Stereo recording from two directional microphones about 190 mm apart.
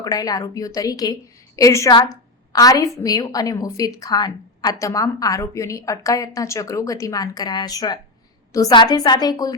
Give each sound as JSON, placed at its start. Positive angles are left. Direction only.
{"t": 0.0, "sound": "a woman's voice", "side_deg": 20}